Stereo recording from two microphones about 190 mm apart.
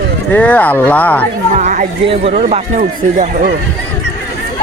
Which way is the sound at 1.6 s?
45° right (ahead or behind).